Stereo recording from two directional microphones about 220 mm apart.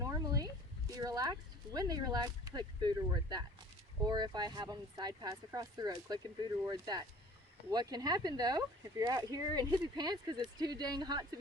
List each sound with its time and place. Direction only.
0.0 s speech: 15° right (ahead or behind)